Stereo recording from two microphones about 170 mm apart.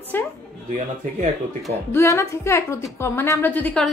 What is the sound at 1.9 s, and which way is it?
A woman's voice, 15° left (ahead or behind).